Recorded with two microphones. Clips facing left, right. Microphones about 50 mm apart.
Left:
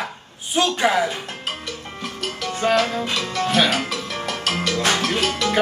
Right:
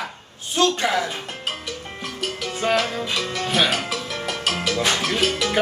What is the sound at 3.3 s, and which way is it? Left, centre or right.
Speech, centre.